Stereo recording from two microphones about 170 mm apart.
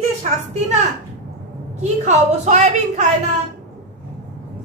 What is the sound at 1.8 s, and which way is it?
A woman's voice, 40° right (ahead or behind).